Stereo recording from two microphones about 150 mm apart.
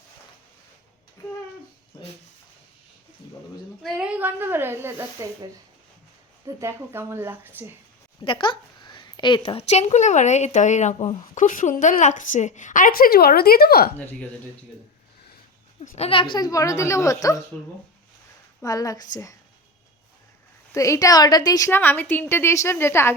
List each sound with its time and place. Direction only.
3.8 s speech: 5° right (ahead or behind)
6.4 s speech: 20° right (ahead or behind)
8.2 s a woman's voice: 35° left (ahead or behind); by 13.9 s 90° left
14.0 s a woman's voice: 10° left (ahead or behind)
15.8 s a woman's voice: 40° left (ahead or behind); by 17.4 s 20° left (ahead or behind)
18.6 s a woman's voice: 25° left (ahead or behind)
20.7 s a woman's voice: 20° left (ahead or behind)
21.7 s a woman's voice: 15° left (ahead or behind)